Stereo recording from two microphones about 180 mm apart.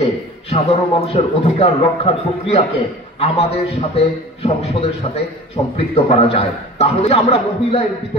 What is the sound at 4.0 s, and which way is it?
A man's voice, 35° left (ahead or behind).